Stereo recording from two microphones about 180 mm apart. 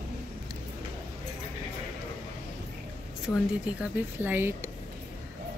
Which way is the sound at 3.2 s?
10° right (ahead or behind).